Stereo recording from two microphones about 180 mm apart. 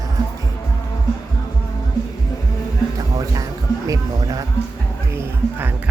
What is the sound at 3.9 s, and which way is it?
Music, 20° right (ahead or behind).